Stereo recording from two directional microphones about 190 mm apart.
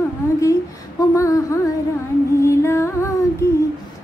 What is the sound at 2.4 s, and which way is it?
Music, 15° left (ahead or behind).